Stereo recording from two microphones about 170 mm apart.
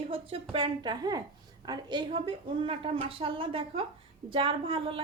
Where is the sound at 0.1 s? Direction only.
35° right (ahead or behind).